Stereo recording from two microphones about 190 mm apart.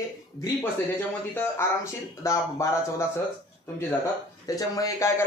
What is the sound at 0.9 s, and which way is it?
Speech, 10° left (ahead or behind).